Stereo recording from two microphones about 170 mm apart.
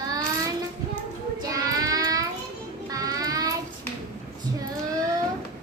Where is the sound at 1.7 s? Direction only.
20° right (ahead or behind).